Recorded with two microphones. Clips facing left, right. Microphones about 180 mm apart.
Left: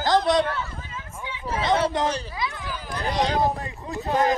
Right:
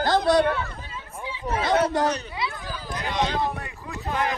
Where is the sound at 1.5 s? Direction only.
30° left (ahead or behind).